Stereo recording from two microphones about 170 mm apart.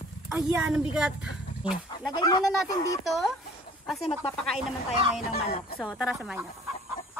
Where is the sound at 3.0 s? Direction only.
Centre (ahead or behind).